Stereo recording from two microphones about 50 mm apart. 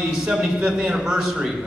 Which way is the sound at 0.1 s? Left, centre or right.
Centre.